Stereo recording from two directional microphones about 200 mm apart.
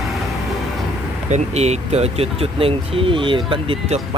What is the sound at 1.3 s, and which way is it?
Speech, 35° right (ahead or behind).